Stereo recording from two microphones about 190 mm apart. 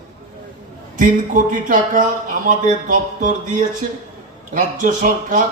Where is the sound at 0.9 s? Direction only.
45° right (ahead or behind).